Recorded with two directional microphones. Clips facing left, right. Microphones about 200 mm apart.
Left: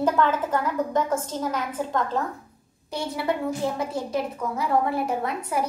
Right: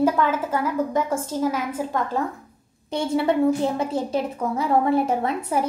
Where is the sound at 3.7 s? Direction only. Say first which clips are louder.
Right 3 dB; 25° right (ahead or behind).